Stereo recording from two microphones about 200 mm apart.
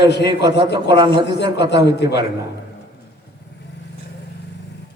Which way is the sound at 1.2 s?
60° left (ahead or behind).